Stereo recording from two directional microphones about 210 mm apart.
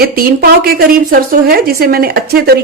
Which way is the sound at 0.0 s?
45° right (ahead or behind).